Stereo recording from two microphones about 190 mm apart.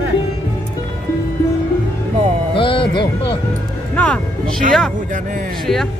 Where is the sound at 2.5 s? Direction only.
25° left (ahead or behind).